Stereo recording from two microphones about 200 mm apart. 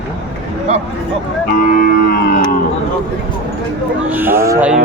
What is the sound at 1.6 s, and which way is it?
Music, 45° left (ahead or behind).